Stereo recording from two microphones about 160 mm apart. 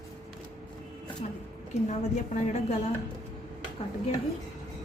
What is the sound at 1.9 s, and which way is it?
Speech, 50° left (ahead or behind).